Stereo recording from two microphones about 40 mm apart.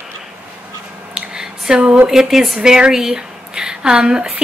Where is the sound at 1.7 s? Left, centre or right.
Centre.